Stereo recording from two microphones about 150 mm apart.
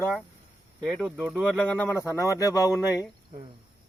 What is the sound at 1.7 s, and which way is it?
Speech, 15° left (ahead or behind).